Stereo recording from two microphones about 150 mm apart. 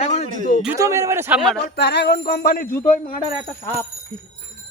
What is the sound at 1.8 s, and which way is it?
Music, 90° left.